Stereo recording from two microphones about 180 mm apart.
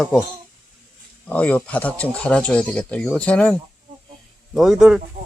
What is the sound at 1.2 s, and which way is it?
Speech, 10° left (ahead or behind).